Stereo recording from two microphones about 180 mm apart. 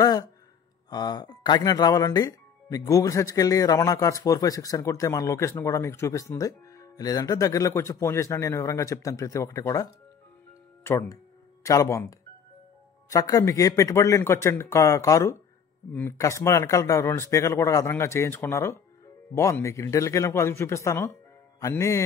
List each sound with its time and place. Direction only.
0.0 s a sound: 20° left (ahead or behind)
0.8 s speech: 20° left (ahead or behind)
21.5 s music: 15° left (ahead or behind)